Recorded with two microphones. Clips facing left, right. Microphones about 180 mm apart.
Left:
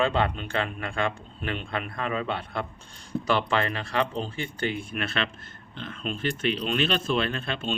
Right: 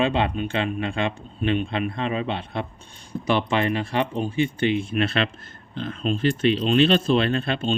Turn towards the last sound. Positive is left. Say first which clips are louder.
# right 6 dB
turn(degrees=-35)  # may be behind; listen again after turning